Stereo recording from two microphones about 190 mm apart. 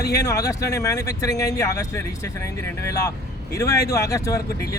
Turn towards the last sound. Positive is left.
turn(degrees=15)  # may be behind; listen again after turning